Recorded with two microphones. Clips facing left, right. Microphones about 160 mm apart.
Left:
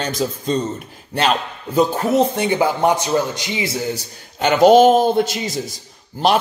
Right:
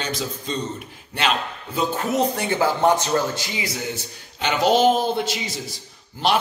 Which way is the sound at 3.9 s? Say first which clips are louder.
Left 5 dB; 50° left (ahead or behind).